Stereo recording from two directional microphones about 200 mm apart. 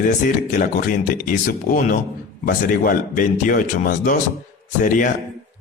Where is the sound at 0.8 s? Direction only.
40° left (ahead or behind).